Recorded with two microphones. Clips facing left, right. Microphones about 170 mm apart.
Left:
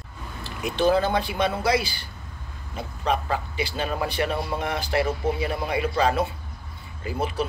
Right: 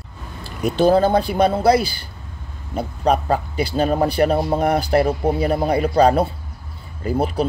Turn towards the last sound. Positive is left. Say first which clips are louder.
# right 7 dB
turn(degrees=-40)  # may be behind; listen again after turning